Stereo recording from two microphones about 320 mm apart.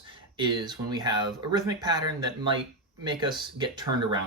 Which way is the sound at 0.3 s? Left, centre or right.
Centre.